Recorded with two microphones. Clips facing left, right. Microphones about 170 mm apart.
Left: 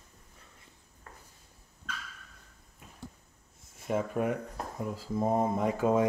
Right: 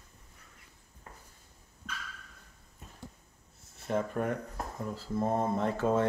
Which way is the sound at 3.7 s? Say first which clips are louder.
Left 1 dB; 10° left (ahead or behind).